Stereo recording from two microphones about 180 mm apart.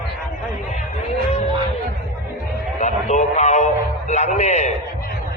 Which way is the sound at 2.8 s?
40° left (ahead or behind).